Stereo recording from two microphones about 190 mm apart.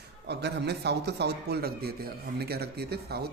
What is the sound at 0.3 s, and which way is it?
Speech, 65° right (ahead or behind).